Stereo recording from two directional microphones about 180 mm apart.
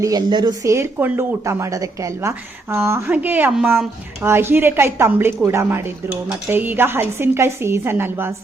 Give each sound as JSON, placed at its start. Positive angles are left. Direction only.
{"t": 0.0, "sound": "speech", "side_deg": -20}